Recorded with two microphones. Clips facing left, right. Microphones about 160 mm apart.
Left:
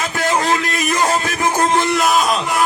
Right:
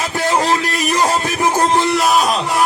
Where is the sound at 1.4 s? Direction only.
35° right (ahead or behind).